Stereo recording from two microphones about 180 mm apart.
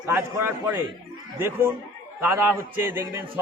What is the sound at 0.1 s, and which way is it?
A man's voice, 15° right (ahead or behind).